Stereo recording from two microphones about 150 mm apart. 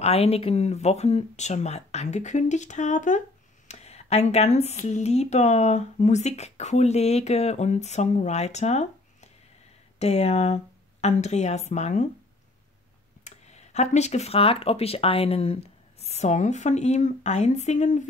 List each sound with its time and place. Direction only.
0.0 s speech: 45° left (ahead or behind)
9.9 s speech: 45° left (ahead or behind)
13.2 s speech: 50° left (ahead or behind)